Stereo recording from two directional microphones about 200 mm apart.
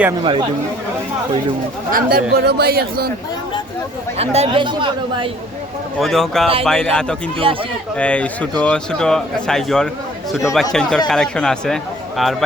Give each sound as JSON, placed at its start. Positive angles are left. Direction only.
{"t": 1.9, "sound": "speech", "side_deg": -45}
{"t": 4.2, "sound": "speech", "side_deg": -30}
{"t": 6.0, "sound": "a man's voice", "side_deg": 0}
{"t": 7.4, "sound": "speech", "side_deg": -30}
{"t": 7.9, "sound": "a man's voice", "side_deg": 5}